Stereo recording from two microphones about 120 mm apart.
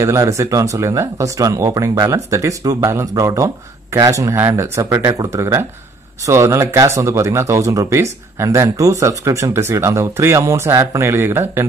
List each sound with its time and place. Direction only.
0.0 s speech: 25° right (ahead or behind)